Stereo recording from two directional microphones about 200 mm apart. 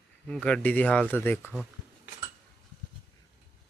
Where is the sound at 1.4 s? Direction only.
5° right (ahead or behind).